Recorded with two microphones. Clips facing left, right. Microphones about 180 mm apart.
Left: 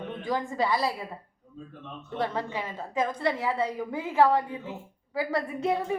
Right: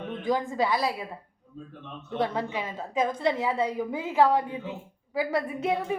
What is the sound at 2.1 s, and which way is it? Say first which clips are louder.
A woman's voice: right 2 dB; 15° right (ahead or behind).